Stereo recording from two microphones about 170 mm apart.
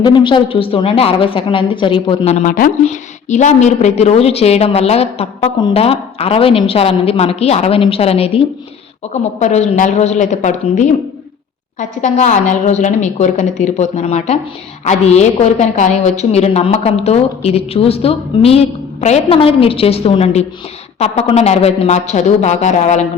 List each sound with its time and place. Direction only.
0.0 s a woman's voice: 25° left (ahead or behind); by 23.0 s 45° left (ahead or behind)